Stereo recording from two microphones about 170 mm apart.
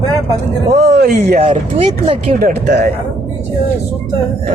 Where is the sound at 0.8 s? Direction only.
65° right (ahead or behind).